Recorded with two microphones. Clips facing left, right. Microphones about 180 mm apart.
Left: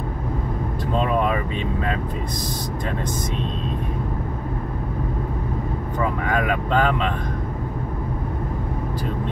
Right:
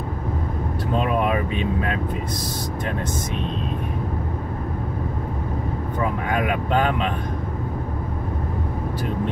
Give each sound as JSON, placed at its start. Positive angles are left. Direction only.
{"t": 0.9, "sound": "vehicle", "side_deg": -10}
{"t": 6.3, "sound": "speech", "side_deg": -15}